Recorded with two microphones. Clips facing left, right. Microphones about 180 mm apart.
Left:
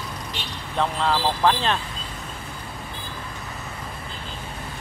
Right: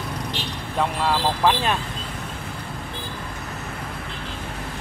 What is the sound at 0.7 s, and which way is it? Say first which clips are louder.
Speech: even; 5° right (ahead or behind).